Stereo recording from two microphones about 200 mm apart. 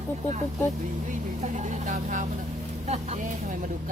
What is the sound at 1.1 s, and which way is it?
Vehicle, 35° right (ahead or behind).